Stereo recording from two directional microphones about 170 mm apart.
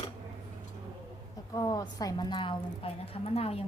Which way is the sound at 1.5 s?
20° left (ahead or behind).